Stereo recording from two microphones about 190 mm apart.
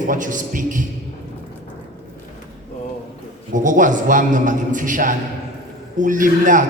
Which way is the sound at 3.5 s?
45° right (ahead or behind).